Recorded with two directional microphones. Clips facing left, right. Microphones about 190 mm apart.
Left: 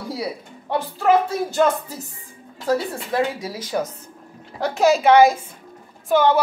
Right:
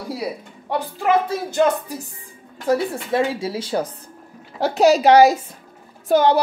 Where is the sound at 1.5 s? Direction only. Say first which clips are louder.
Right 2 dB; 20° right (ahead or behind).